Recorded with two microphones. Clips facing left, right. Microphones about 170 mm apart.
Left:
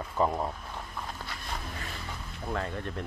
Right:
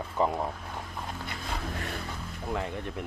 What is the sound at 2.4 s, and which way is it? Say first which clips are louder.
Speech: even; 15° right (ahead or behind).